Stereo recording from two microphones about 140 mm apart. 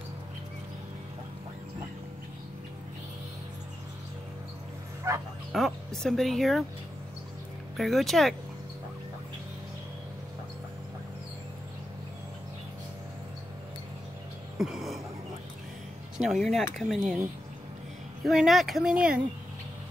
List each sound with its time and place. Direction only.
5.1 s bow-wow: 20° right (ahead or behind)
5.5 s speech: centre (ahead or behind)
7.7 s speech: centre (ahead or behind)
14.6 s a sound: 5° right (ahead or behind)
16.2 s speech: centre (ahead or behind)
18.2 s speech: centre (ahead or behind)